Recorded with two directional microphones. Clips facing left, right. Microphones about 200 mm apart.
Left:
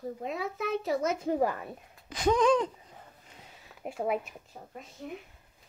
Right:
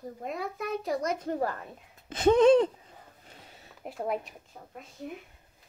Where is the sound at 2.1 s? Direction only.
25° right (ahead or behind).